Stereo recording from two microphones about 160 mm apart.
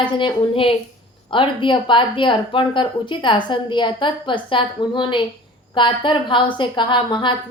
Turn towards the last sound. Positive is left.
turn(degrees=30)  # may be behind; listen again after turning